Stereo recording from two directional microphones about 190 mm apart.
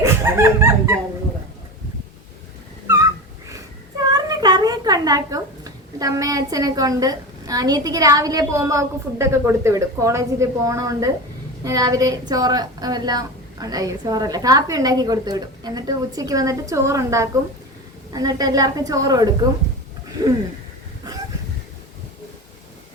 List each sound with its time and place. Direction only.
0.0 s speech: 15° right (ahead or behind)
2.8 s a sound: 15° right (ahead or behind)
4.1 s a woman's voice: 20° right (ahead or behind)